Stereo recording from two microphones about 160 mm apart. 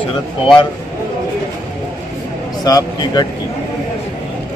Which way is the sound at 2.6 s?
25° left (ahead or behind).